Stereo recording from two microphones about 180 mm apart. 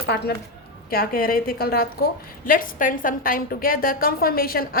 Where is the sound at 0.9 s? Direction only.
55° left (ahead or behind).